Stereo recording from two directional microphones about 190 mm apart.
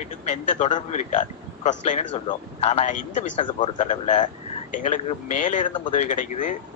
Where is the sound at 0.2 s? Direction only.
40° left (ahead or behind).